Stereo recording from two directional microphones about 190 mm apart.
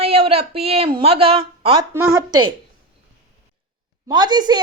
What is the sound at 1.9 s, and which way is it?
Speech, 15° right (ahead or behind).